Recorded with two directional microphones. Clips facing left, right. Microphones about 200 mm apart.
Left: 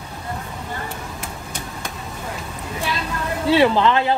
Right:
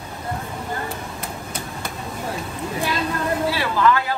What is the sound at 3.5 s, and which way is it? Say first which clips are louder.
Speech: left 7 dB; 25° left (ahead or behind).